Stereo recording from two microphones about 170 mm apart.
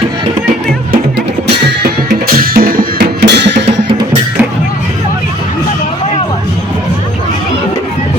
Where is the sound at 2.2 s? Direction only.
60° right (ahead or behind); by 3.8 s 90° right.